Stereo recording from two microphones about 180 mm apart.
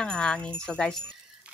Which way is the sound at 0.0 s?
5° left (ahead or behind).